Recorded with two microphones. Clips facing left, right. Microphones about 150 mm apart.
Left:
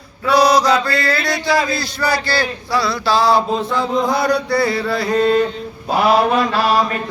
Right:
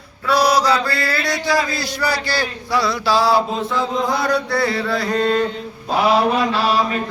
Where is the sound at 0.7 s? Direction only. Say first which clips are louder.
Left 2 dB; 15° left (ahead or behind).